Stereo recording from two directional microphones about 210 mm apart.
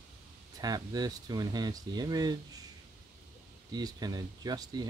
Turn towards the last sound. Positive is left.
turn(degrees=-20)  # may be behind; listen again after turning